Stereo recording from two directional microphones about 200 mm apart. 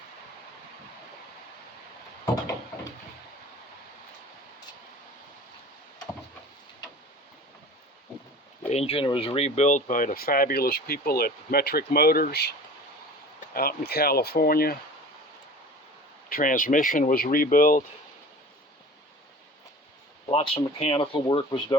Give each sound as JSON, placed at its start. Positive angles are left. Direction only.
{"t": 8.7, "sound": "speech", "side_deg": 30}
{"t": 16.3, "sound": "speech", "side_deg": 40}
{"t": 20.2, "sound": "speech", "side_deg": 25}